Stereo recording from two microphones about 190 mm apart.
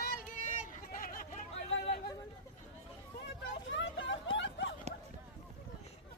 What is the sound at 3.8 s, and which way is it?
Hubbub, 75° left (ahead or behind).